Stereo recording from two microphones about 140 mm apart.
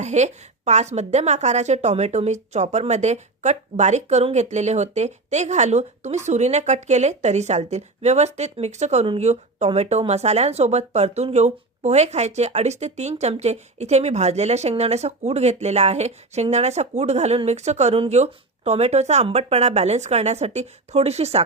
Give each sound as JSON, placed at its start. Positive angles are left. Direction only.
{"t": 0.0, "sound": "speech", "side_deg": -55}